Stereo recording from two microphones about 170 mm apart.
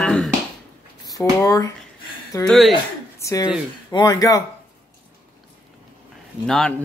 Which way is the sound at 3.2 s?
20° left (ahead or behind).